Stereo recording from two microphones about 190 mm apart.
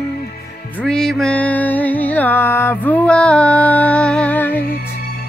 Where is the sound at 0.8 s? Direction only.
5° left (ahead or behind).